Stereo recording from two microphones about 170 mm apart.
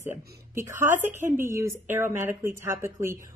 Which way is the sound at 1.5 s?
15° right (ahead or behind).